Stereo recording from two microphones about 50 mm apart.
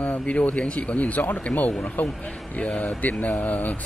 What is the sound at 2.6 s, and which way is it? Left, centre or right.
Speech, left.